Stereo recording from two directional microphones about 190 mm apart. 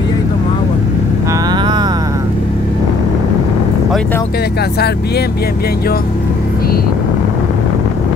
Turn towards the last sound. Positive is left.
turn(degrees=55)  # may be behind; listen again after turning